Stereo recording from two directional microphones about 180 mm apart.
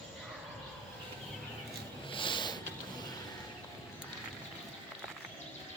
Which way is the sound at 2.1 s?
25° left (ahead or behind).